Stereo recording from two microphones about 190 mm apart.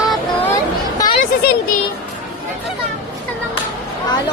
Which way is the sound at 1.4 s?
55° left (ahead or behind).